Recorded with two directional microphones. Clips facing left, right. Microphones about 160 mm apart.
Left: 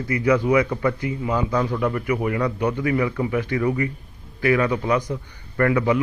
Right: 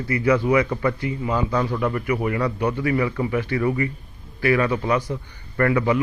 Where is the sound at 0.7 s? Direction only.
Centre (ahead or behind).